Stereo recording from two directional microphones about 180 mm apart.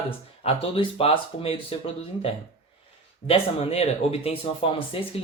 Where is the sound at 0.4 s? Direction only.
30° left (ahead or behind).